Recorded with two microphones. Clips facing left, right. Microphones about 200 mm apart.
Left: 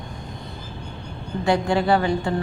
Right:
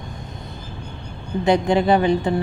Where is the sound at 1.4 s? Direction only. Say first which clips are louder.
Right 3 dB; 20° right (ahead or behind).